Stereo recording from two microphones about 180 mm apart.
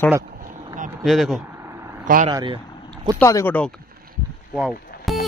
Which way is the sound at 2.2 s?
25° right (ahead or behind).